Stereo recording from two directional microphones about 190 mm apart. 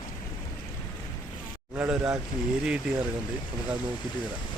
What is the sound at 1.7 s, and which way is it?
Speech, 5° right (ahead or behind).